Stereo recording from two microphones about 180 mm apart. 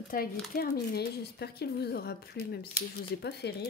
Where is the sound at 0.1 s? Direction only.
50° left (ahead or behind).